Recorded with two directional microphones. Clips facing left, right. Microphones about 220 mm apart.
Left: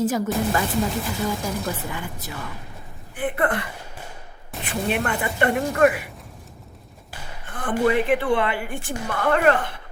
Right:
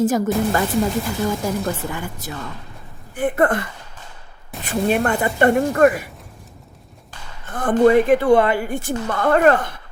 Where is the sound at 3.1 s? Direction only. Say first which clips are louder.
Right 5 dB; 45° right (ahead or behind).